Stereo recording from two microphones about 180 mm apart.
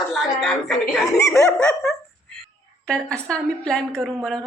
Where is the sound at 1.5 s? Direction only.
5° left (ahead or behind).